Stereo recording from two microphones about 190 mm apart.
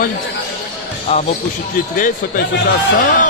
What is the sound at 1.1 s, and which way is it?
Speech, 30° left (ahead or behind).